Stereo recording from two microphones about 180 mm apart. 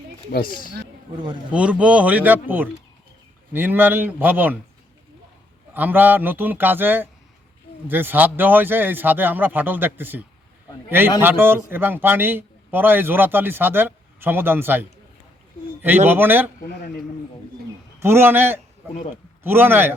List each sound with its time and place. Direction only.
0.3 s speech: 55° left (ahead or behind)
1.1 s speech: 25° right (ahead or behind)
1.5 s a man's voice: 5° right (ahead or behind)
5.7 s a man's voice: 10° right (ahead or behind)
16.0 s a man's voice: 10° right (ahead or behind)
18.0 s a man's voice: 15° right (ahead or behind)